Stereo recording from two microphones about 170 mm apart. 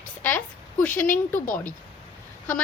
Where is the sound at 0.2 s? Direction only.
10° left (ahead or behind).